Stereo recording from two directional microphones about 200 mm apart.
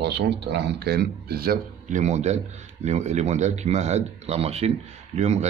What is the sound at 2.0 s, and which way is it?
Speech, 35° right (ahead or behind).